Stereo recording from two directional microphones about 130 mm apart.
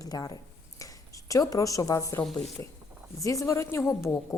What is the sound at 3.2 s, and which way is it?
A woman's voice, 25° left (ahead or behind).